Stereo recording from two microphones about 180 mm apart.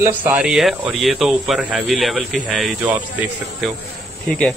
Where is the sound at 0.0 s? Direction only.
10° right (ahead or behind).